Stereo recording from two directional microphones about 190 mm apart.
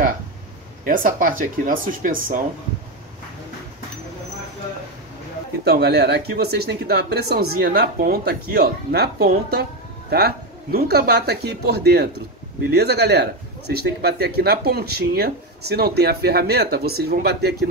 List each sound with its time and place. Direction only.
0.8 s speech: 45° right (ahead or behind)
5.7 s speech: 60° right (ahead or behind)